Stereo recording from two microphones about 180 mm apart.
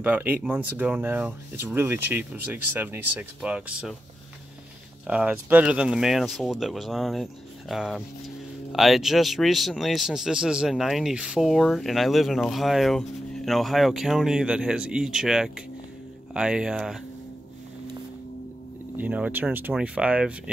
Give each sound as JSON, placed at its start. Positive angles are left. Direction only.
{"t": 0.0, "sound": "speech", "side_deg": -10}
{"t": 5.0, "sound": "speech", "side_deg": -5}
{"t": 18.9, "sound": "speech", "side_deg": -10}